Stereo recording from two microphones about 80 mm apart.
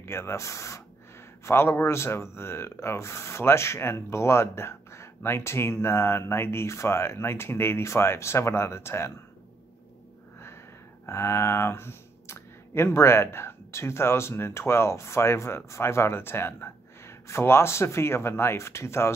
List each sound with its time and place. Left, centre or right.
0.0 s speech: left
11.1 s speech: left